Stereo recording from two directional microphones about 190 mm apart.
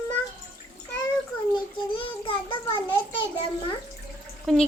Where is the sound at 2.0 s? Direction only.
25° left (ahead or behind).